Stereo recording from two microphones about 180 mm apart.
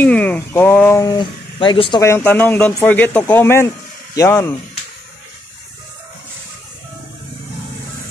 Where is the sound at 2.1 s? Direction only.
10° left (ahead or behind).